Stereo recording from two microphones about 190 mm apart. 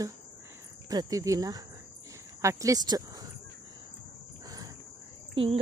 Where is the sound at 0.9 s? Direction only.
20° right (ahead or behind).